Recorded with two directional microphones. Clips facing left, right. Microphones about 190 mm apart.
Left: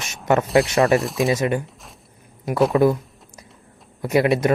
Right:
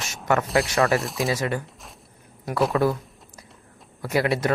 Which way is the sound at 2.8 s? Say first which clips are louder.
Left 6 dB; 20° left (ahead or behind).